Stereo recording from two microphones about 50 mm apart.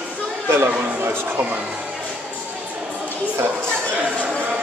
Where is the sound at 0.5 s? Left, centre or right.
Right.